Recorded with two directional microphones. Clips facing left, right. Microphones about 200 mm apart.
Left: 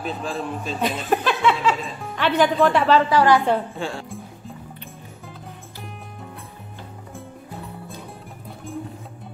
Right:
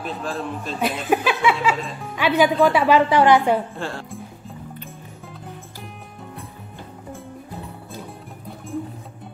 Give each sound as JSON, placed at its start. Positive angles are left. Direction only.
{"t": 0.0, "sound": "speech", "side_deg": 0}
{"t": 2.9, "sound": "a woman's voice", "side_deg": -20}
{"t": 3.7, "sound": "speech", "side_deg": 0}